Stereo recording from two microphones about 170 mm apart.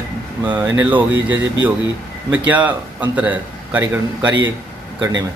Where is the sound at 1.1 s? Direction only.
90° right.